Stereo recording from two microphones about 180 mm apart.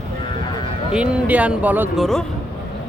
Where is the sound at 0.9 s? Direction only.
5° right (ahead or behind).